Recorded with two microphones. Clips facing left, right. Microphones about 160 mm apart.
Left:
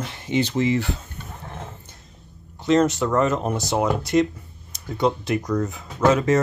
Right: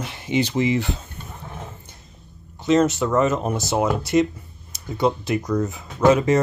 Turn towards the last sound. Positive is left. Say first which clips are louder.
# right 2 dB
turn(degrees=-15)  # may be behind; listen again after turning